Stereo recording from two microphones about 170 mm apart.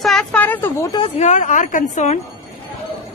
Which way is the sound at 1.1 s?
45° left (ahead or behind).